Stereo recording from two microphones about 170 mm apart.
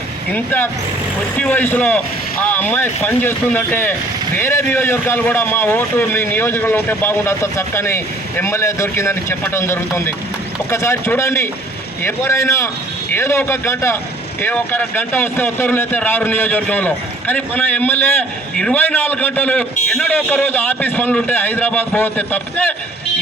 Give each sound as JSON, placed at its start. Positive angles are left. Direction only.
{"t": 0.3, "sound": "a man's voice", "side_deg": 10}